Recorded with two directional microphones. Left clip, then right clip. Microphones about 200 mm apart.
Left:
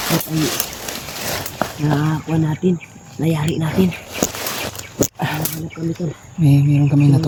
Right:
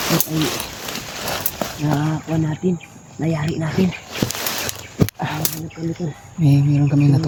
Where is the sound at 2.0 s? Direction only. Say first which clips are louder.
Left 2 dB; 30° left (ahead or behind).